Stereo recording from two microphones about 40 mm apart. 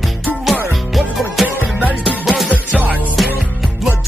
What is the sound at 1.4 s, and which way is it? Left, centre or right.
Music, right.